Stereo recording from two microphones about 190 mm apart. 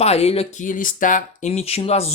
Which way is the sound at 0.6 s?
45° left (ahead or behind).